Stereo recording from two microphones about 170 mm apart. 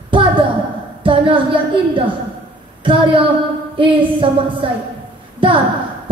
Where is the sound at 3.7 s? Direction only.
30° right (ahead or behind).